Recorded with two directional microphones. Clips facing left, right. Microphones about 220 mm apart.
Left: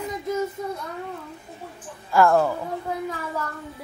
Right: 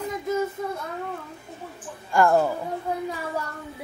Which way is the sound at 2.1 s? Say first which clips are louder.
Left 2 dB; 5° left (ahead or behind).